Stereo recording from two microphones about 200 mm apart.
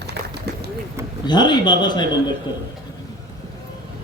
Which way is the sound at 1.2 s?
20° left (ahead or behind).